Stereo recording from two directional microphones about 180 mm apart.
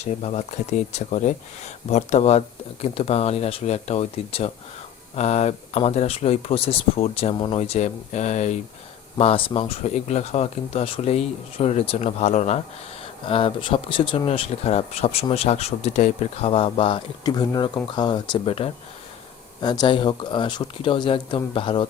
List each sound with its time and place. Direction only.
0.0 s speech: 35° left (ahead or behind)